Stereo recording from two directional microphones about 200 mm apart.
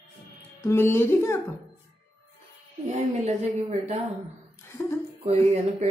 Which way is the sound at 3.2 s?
35° right (ahead or behind).